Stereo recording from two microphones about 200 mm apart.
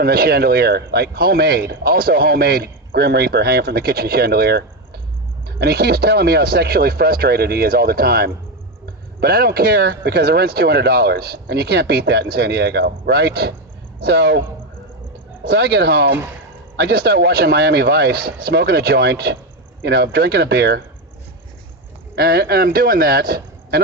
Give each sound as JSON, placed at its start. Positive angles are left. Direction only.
{"t": 0.0, "sound": "speech", "side_deg": -50}
{"t": 15.4, "sound": "speech", "side_deg": -55}
{"t": 22.1, "sound": "speech", "side_deg": -50}